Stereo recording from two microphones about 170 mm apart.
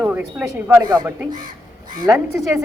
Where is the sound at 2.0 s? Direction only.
15° right (ahead or behind).